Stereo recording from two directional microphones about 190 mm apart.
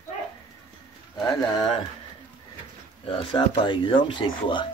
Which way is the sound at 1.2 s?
25° left (ahead or behind).